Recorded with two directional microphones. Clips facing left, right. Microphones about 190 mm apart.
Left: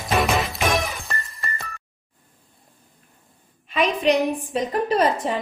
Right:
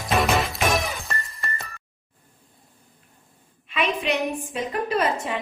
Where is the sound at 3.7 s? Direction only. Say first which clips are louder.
Left 5 dB; 35° left (ahead or behind).